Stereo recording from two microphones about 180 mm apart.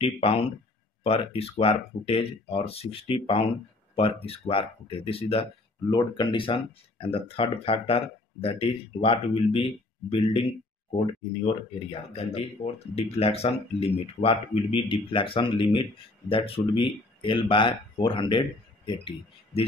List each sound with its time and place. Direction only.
0.0 s speech: 30° left (ahead or behind)
12.1 s speech: 35° left (ahead or behind)